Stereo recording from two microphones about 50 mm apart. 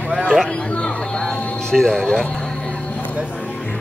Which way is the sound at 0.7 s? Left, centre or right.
Centre.